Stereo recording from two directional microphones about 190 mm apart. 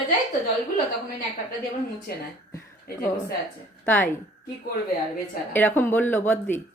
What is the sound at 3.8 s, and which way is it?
Speech, 10° left (ahead or behind).